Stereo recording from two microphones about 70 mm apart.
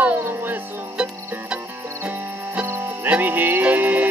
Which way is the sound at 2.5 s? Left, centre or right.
Right.